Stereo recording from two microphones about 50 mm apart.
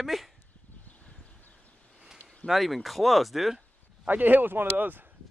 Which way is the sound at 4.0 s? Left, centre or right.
Right.